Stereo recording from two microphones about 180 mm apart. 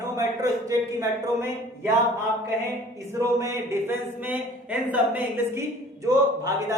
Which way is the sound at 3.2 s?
15° right (ahead or behind).